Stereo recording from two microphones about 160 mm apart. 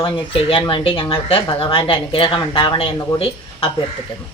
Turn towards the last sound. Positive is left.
turn(degrees=35)  # may be behind; listen again after turning